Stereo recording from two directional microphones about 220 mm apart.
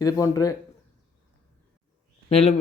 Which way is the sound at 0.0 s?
15° left (ahead or behind).